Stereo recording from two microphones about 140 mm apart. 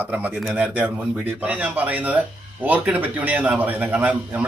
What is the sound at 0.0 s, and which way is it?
Speech, 10° right (ahead or behind).